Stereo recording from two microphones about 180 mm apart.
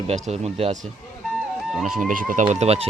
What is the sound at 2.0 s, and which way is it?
Speech, 50° right (ahead or behind).